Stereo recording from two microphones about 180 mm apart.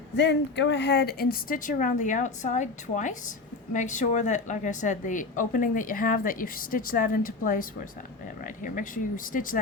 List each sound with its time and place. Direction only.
0.2 s a woman's voice: 80° left; by 9.6 s 50° left (ahead or behind)